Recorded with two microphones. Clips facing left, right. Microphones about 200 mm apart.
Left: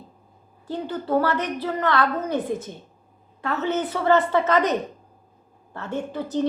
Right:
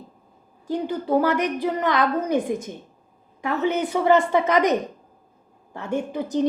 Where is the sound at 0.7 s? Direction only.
15° right (ahead or behind).